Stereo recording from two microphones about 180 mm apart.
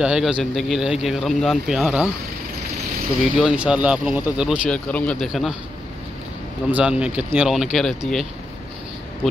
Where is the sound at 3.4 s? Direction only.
5° right (ahead or behind).